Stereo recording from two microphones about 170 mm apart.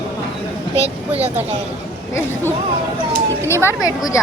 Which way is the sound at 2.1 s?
15° left (ahead or behind).